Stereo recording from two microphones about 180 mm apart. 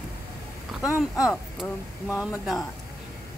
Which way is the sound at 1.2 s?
Centre (ahead or behind).